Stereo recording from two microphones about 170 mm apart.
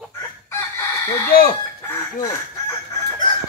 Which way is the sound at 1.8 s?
15° left (ahead or behind).